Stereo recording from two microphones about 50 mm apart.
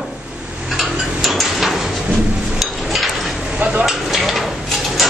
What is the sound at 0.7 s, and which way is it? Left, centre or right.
Tick-tock, centre.